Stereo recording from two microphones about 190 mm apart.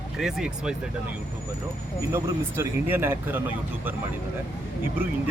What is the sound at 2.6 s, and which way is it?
Speech, 10° right (ahead or behind).